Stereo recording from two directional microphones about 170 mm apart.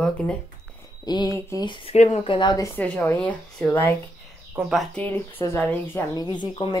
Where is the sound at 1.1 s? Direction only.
25° left (ahead or behind).